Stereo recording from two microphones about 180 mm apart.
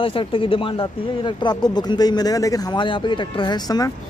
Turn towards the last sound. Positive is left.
turn(degrees=20)  # may be behind; listen again after turning